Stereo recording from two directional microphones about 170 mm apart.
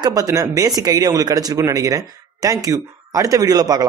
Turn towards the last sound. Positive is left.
turn(degrees=-20)  # may be behind; listen again after turning